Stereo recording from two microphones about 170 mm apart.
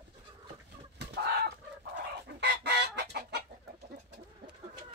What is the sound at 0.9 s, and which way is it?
Chicken, 70° right (ahead or behind).